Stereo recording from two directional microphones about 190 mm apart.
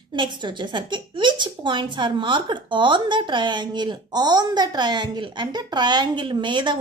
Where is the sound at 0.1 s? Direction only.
25° right (ahead or behind).